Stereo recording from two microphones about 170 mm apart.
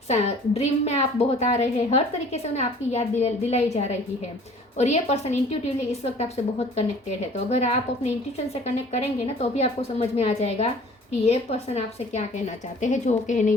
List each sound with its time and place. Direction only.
0.1 s a woman's voice: 40° left (ahead or behind)